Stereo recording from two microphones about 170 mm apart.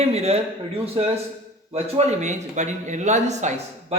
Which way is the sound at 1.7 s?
40° right (ahead or behind).